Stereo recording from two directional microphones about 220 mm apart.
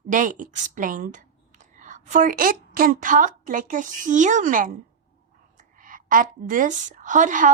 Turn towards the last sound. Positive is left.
turn(degrees=-35)  # may be behind; listen again after turning